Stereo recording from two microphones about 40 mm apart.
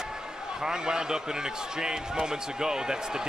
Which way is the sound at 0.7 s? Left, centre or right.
Centre.